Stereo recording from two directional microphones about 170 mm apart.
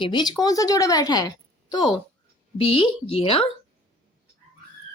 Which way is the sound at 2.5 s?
30° left (ahead or behind).